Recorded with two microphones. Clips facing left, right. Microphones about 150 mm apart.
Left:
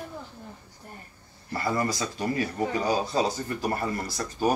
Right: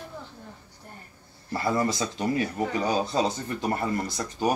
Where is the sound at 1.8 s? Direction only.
25° right (ahead or behind).